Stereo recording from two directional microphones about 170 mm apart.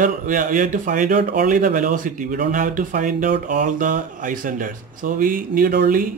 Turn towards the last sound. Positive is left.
turn(degrees=-55)  # may be behind; listen again after turning